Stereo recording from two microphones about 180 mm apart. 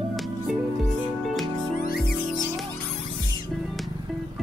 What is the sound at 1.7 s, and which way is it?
Music, 55° left (ahead or behind).